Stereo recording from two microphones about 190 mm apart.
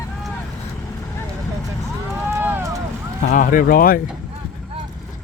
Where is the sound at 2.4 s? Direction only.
15° right (ahead or behind).